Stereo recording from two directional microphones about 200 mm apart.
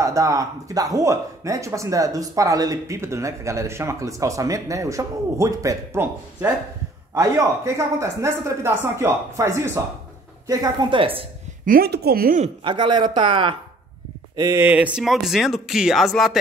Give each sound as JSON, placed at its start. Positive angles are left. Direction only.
{"t": 0.0, "sound": "speech", "side_deg": -15}
{"t": 11.6, "sound": "speech", "side_deg": -50}
{"t": 12.6, "sound": "speech", "side_deg": -25}